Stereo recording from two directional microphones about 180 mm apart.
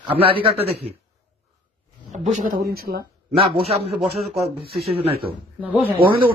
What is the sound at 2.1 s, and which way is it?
Speech, 45° right (ahead or behind).